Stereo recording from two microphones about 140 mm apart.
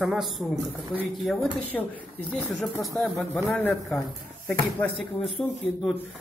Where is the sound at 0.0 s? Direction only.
5° right (ahead or behind).